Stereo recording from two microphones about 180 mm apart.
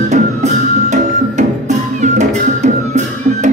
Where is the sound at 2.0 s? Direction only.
40° right (ahead or behind).